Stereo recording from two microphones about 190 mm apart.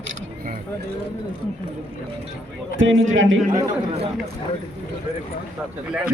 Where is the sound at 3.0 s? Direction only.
90° right.